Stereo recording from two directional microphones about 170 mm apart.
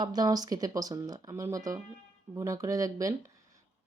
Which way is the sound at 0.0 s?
25° right (ahead or behind).